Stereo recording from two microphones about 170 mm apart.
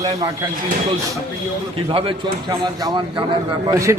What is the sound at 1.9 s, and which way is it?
A man's voice, 35° right (ahead or behind).